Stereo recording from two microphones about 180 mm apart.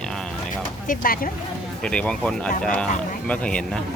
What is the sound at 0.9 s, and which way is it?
Speech, 50° left (ahead or behind).